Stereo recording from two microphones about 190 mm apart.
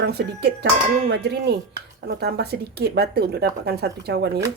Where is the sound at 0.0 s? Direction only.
60° right (ahead or behind).